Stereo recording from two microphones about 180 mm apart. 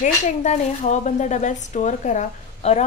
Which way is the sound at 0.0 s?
40° left (ahead or behind).